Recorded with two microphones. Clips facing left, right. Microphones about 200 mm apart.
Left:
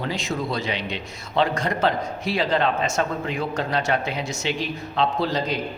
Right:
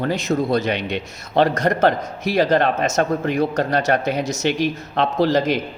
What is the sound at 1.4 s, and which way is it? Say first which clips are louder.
A man's voice: right 5 dB; 45° right (ahead or behind).